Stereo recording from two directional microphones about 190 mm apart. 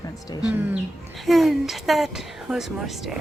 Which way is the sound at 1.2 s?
Centre (ahead or behind).